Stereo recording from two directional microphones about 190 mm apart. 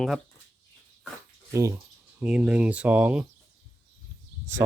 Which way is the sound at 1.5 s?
15° right (ahead or behind).